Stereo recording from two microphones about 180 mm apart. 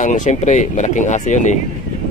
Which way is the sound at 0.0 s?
40° left (ahead or behind).